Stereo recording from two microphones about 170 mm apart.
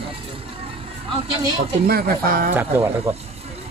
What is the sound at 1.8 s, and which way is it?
Speech, 65° right (ahead or behind).